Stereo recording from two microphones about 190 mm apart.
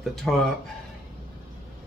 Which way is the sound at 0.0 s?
Centre (ahead or behind).